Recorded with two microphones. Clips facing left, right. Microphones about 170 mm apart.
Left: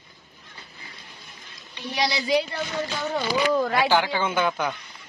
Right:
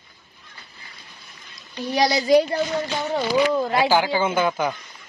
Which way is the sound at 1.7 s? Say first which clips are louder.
Right 6 dB; 40° right (ahead or behind).